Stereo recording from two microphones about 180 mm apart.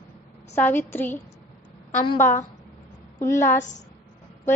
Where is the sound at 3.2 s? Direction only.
15° left (ahead or behind).